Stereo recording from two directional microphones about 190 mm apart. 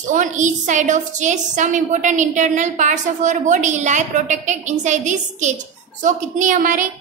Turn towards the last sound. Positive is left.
turn(degrees=-45)  # may be behind; listen again after turning